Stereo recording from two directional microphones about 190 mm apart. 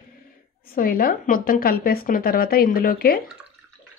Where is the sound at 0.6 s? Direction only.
50° left (ahead or behind).